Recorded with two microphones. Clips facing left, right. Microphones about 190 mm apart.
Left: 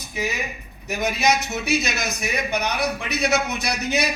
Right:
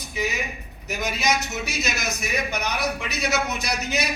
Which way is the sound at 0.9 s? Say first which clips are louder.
Left 4 dB; 60° left (ahead or behind).